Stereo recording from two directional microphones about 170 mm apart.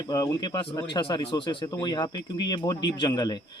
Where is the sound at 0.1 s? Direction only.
25° left (ahead or behind).